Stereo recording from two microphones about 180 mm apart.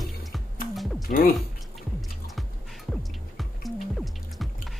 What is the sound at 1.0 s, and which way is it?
Speech, 55° left (ahead or behind).